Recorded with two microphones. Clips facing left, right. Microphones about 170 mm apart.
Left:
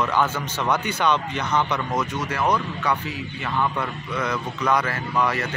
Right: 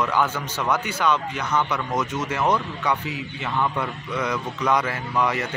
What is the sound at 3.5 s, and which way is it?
Speech, centre (ahead or behind).